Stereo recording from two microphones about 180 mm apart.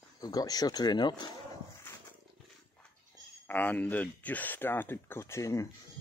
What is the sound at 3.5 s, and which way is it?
Speech, 10° left (ahead or behind).